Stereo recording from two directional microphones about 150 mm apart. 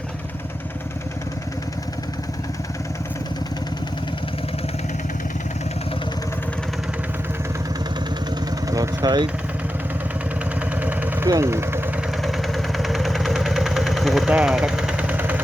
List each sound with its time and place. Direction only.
8.6 s vehicle: 20° right (ahead or behind)
10.8 s engine: 10° right (ahead or behind)
11.3 s speech: 20° right (ahead or behind)
12.2 s vehicle: centre (ahead or behind)